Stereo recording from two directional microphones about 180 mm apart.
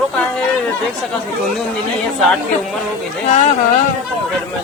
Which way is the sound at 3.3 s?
40° left (ahead or behind).